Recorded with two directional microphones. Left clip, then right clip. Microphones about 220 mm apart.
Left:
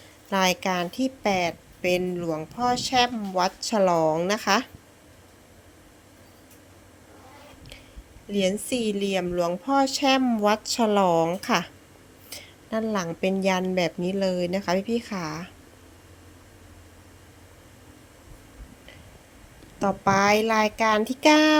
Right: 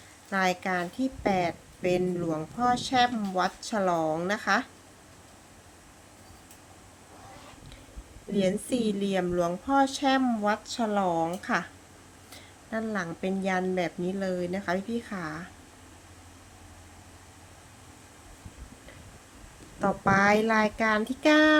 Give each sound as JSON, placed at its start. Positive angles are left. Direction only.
{"t": 0.3, "sound": "a woman's voice", "side_deg": 25}
{"t": 8.4, "sound": "a woman's voice", "side_deg": 20}
{"t": 19.8, "sound": "a woman's voice", "side_deg": 20}